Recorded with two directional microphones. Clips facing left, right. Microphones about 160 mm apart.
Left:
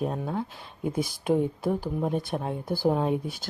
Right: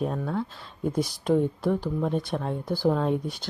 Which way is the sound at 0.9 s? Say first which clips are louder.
Right 2 dB; 55° left (ahead or behind).